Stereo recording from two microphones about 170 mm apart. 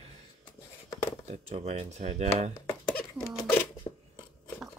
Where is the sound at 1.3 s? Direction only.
40° right (ahead or behind).